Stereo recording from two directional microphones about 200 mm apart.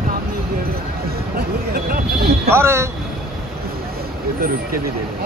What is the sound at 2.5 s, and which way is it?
Speech, 10° right (ahead or behind).